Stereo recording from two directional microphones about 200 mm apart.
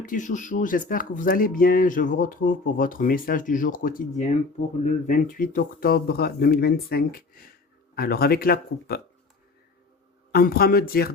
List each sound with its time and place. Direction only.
0.0 s speech: 40° left (ahead or behind)
10.3 s speech: 50° left (ahead or behind)